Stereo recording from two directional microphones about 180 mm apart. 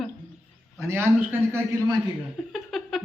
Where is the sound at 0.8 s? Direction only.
15° right (ahead or behind).